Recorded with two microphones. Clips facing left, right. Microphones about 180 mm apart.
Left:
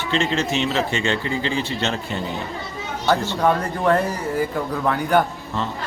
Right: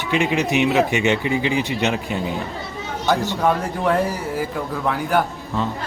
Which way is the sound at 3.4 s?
5° right (ahead or behind).